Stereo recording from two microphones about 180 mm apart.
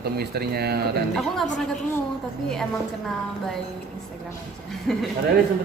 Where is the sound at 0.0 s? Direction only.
60° right (ahead or behind).